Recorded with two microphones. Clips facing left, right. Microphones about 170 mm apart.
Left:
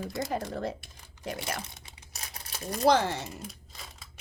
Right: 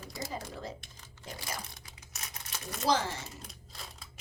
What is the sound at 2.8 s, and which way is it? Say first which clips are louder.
Speech: left 6 dB; 65° left (ahead or behind).